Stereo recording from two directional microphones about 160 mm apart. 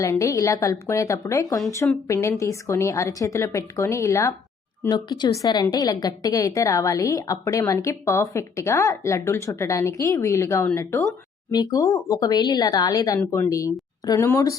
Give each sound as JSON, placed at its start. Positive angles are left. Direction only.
{"t": 0.0, "sound": "a woman's voice", "side_deg": 20}